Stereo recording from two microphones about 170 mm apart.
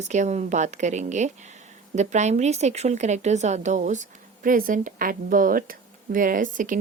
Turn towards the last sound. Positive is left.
turn(degrees=-50)  # may be behind; listen again after turning